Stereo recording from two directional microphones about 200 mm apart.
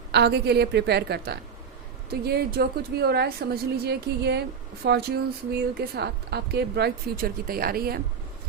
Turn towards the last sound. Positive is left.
turn(degrees=-50)  # may be behind; listen again after turning